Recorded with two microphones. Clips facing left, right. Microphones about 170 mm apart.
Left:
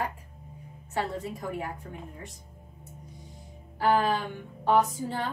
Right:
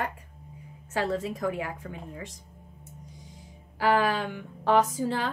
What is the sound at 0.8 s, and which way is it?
A woman's voice, 90° right.